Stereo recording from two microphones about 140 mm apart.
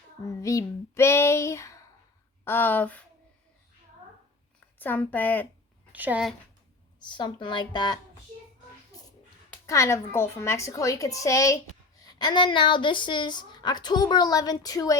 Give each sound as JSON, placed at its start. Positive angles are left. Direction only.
{"t": 0.4, "sound": "a woman's voice", "side_deg": 20}
{"t": 4.8, "sound": "a woman's voice", "side_deg": 15}
{"t": 5.9, "sound": "a woman's voice", "side_deg": -10}
{"t": 7.0, "sound": "a woman's voice", "side_deg": 35}
{"t": 9.6, "sound": "a woman's voice", "side_deg": 20}
{"t": 12.0, "sound": "a woman's voice", "side_deg": 30}